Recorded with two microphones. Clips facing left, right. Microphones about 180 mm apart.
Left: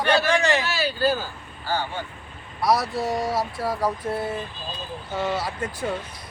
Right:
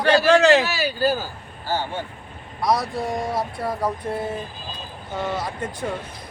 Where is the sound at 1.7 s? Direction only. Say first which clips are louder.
Right 1 dB; 20° right (ahead or behind).